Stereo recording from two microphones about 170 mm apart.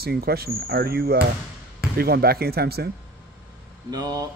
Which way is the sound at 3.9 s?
20° right (ahead or behind).